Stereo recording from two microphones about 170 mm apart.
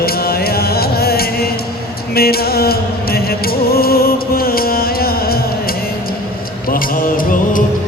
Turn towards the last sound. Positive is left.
turn(degrees=55)  # may be behind; listen again after turning